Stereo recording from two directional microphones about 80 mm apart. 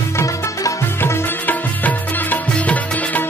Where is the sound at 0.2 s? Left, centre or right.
Left.